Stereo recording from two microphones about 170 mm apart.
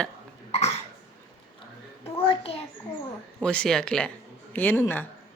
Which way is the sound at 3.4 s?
5° left (ahead or behind).